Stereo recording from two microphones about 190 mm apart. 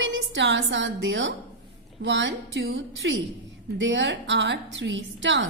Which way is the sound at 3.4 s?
70° right (ahead or behind).